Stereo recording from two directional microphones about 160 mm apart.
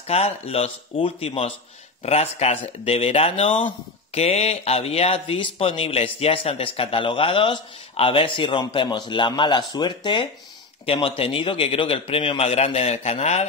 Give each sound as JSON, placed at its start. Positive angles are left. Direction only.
{"t": 0.0, "sound": "speech", "side_deg": 40}